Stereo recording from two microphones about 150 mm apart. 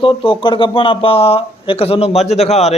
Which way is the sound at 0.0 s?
35° left (ahead or behind).